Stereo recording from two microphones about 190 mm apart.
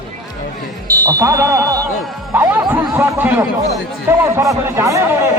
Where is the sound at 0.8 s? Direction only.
20° right (ahead or behind).